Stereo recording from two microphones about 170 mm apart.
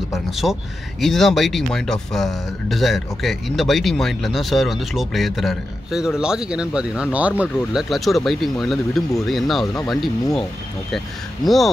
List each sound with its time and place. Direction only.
1.0 s speech: centre (ahead or behind)
11.4 s speech: centre (ahead or behind)